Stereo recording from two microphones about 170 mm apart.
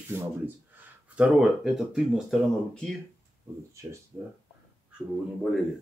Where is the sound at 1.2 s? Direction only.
Centre (ahead or behind).